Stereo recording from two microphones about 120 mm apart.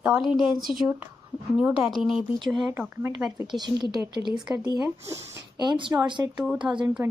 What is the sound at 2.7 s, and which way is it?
Speech, 20° right (ahead or behind).